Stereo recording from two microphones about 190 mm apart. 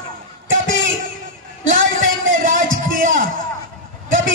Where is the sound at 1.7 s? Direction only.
45° right (ahead or behind).